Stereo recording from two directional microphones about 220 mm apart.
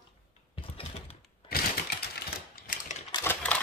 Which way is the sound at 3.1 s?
10° left (ahead or behind).